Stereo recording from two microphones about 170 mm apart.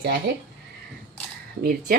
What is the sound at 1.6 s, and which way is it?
Speech, 65° right (ahead or behind).